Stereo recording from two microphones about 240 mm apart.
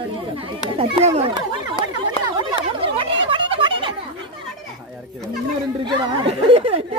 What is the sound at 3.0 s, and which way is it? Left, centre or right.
Turkey, right.